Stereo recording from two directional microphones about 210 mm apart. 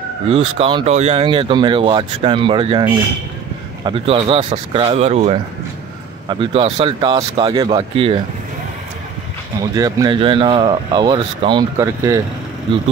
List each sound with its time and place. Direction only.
0.3 s speech: 25° right (ahead or behind)
9.6 s speech: 15° right (ahead or behind)